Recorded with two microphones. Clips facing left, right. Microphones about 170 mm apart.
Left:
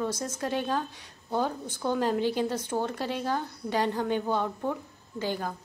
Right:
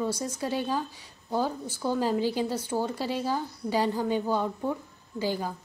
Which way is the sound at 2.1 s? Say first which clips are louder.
Even; 55° left (ahead or behind).